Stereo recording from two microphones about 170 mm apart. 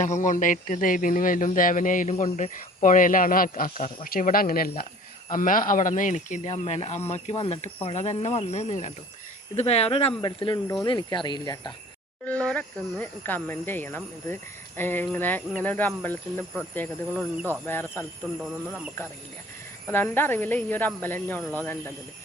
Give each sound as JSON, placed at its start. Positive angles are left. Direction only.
{"t": 0.0, "sound": "speech", "side_deg": 45}
{"t": 12.2, "sound": "speech", "side_deg": 5}
{"t": 19.9, "sound": "speech", "side_deg": 15}